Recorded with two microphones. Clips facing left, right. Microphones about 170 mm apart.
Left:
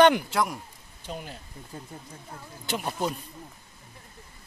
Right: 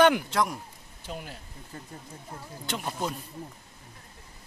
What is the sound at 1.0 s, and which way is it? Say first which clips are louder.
Speech: left 1 dB; 5° right (ahead or behind).